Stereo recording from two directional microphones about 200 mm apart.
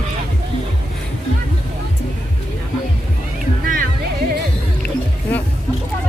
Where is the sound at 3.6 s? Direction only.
45° right (ahead or behind).